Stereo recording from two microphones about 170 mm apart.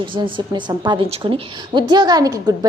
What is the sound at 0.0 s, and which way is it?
A woman's voice, 30° right (ahead or behind).